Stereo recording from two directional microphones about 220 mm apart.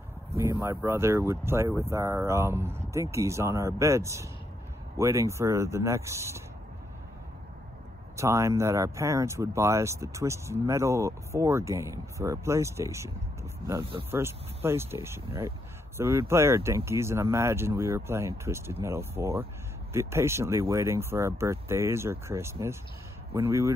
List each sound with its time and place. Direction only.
0.4 s speech: 15° right (ahead or behind)
8.2 s speech: 15° right (ahead or behind)
14.1 s speech: 10° right (ahead or behind)